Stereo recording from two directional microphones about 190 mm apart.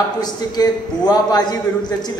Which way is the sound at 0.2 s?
20° left (ahead or behind).